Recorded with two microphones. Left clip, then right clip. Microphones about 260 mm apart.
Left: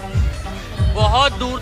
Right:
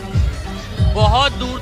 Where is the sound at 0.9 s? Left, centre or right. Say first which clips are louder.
Even; centre.